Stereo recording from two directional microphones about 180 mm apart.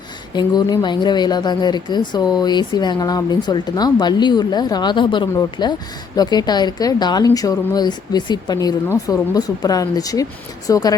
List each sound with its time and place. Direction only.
0.3 s a woman's voice: 25° left (ahead or behind)